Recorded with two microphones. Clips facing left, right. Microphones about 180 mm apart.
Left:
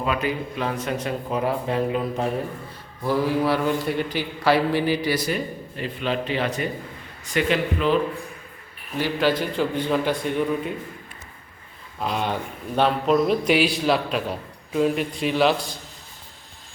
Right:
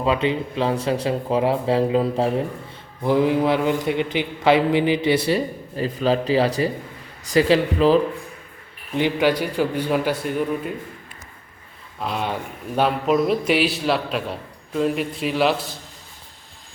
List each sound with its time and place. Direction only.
0.0 s a man's voice: 25° right (ahead or behind)
3.0 s a man's voice: 20° right (ahead or behind)
9.0 s a man's voice: 20° right (ahead or behind); by 10.7 s 5° right (ahead or behind)
11.9 s a man's voice: centre (ahead or behind)